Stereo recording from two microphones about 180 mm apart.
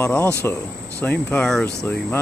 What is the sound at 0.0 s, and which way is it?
Speech, 15° left (ahead or behind).